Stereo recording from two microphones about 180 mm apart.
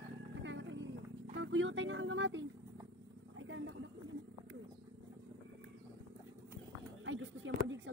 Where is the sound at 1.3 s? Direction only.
90° right.